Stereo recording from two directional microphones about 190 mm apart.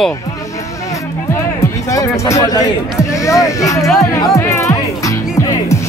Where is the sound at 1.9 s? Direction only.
15° left (ahead or behind).